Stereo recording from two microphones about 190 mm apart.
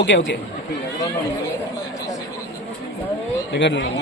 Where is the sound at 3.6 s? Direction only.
70° left (ahead or behind).